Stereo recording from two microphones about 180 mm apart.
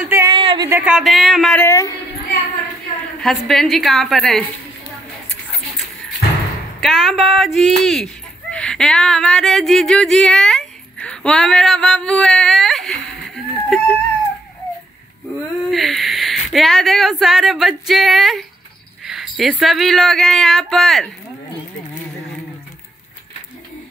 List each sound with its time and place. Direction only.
0.0 s a sound: 15° right (ahead or behind)
0.4 s a sound: 30° right (ahead or behind)
0.7 s speech: 10° right (ahead or behind)
1.6 s a woman's voice: 20° left (ahead or behind)
3.2 s speech: centre (ahead or behind)
6.8 s speech: centre (ahead or behind)
15.7 s speech: centre (ahead or behind)